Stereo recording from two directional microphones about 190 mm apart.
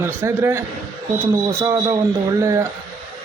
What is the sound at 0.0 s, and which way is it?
A man's voice, 10° right (ahead or behind).